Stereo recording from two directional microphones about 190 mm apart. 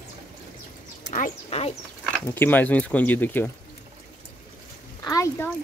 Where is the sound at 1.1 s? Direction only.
40° left (ahead or behind).